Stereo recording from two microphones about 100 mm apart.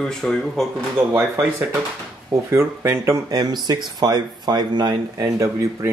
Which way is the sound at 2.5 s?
25° right (ahead or behind).